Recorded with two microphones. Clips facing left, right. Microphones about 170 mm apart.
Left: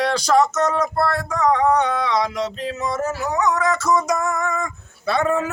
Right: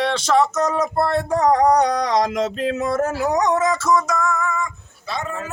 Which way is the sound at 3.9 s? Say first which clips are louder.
Left 1 dB; 15° left (ahead or behind).